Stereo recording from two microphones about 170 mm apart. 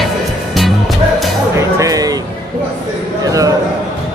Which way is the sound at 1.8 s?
20° right (ahead or behind).